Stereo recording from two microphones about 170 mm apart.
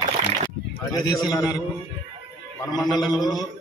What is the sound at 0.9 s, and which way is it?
Speech, 25° left (ahead or behind).